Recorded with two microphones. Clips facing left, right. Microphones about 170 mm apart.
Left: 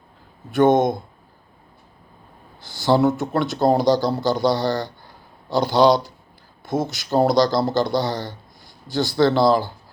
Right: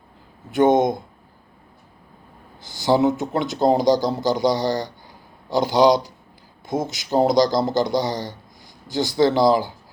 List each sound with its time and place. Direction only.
0.5 s speech: 20° right (ahead or behind)
2.6 s speech: 20° right (ahead or behind)